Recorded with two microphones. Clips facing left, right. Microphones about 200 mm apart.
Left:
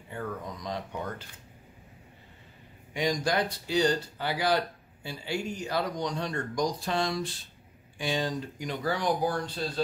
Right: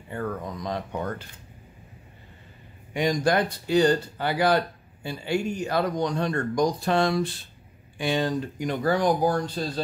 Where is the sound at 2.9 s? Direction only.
55° right (ahead or behind).